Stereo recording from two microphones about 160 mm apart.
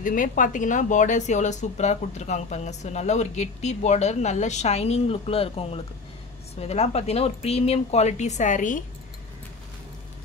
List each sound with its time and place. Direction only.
0.0 s speech: 55° left (ahead or behind)